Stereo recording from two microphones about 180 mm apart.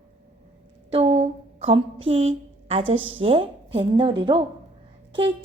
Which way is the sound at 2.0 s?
35° right (ahead or behind).